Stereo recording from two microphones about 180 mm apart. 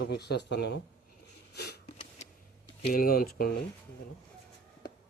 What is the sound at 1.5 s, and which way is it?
Sniff, 65° left (ahead or behind).